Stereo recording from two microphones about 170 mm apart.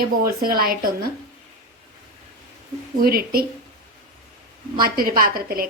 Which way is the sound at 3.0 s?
60° right (ahead or behind).